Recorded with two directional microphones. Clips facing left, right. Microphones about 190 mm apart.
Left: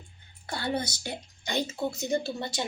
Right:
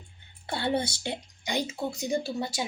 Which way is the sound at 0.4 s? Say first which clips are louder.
Right 3 dB; 25° right (ahead or behind).